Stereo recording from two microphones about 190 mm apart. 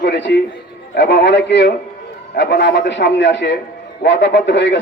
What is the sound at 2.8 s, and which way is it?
A man's voice, 70° left (ahead or behind).